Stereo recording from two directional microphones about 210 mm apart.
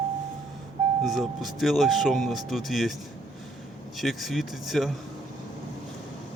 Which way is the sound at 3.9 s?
Centre (ahead or behind).